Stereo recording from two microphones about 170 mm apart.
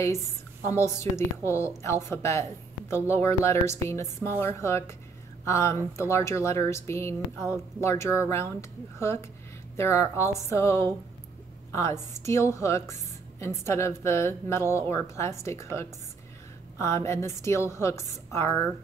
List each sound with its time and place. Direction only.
0.0 s a woman's voice: 15° left (ahead or behind)